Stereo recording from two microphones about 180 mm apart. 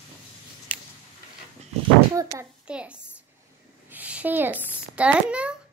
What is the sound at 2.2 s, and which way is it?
Speech, 15° right (ahead or behind).